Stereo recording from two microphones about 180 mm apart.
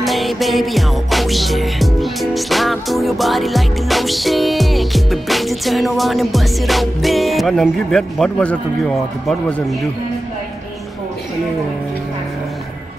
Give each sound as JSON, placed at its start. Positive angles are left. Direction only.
{"t": 0.0, "sound": "music", "side_deg": 0}